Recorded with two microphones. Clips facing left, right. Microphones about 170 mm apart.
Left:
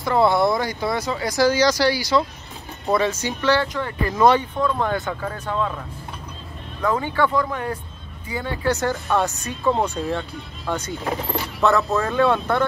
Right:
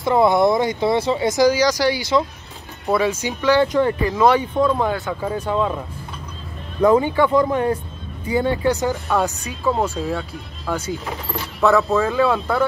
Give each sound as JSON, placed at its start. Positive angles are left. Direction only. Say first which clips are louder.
{"t": 0.0, "sound": "speech", "louder": "right 3 dB", "side_deg": -20}
{"t": 2.9, "sound": "speech", "louder": "right 1 dB", "side_deg": -10}
{"t": 4.1, "sound": "speech", "louder": "right 1 dB", "side_deg": -5}
{"t": 6.8, "sound": "speech", "louder": "right 6 dB", "side_deg": -15}